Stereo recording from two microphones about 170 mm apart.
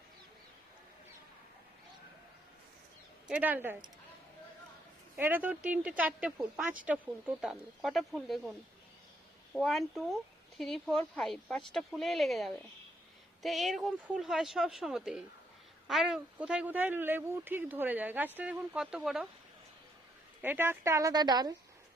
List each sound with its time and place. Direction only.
3.2 s speech: 10° right (ahead or behind)
5.1 s speech: 10° right (ahead or behind)
9.6 s speech: centre (ahead or behind)
20.4 s speech: 10° right (ahead or behind)